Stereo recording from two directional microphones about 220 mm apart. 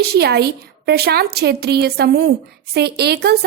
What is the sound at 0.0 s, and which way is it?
Speech, 45° right (ahead or behind).